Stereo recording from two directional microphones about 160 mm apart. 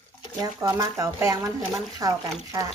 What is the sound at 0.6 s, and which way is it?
Speech, 20° right (ahead or behind).